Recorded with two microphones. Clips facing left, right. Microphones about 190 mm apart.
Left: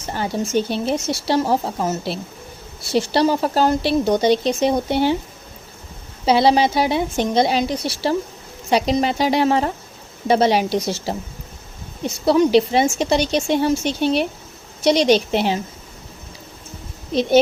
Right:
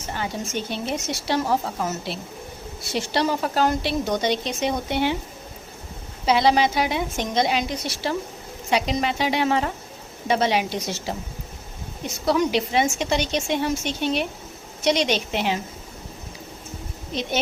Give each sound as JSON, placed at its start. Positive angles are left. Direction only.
{"t": 0.1, "sound": "speech", "side_deg": 35}
{"t": 6.2, "sound": "speech", "side_deg": 30}